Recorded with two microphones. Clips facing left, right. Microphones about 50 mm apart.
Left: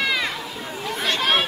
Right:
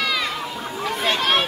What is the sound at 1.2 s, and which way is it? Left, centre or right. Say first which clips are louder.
Chatter: left 1 dB; centre.